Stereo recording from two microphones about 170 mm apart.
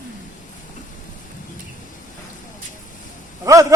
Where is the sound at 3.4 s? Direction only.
20° right (ahead or behind).